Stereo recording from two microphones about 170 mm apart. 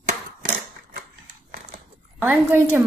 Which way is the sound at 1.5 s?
40° right (ahead or behind).